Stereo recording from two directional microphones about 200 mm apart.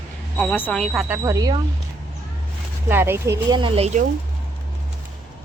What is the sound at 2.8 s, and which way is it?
Speech, 10° right (ahead or behind).